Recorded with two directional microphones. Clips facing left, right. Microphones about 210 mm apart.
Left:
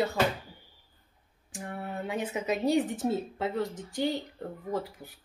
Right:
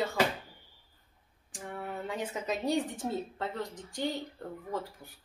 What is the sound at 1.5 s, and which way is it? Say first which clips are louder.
A woman's voice: left 2 dB; 10° left (ahead or behind).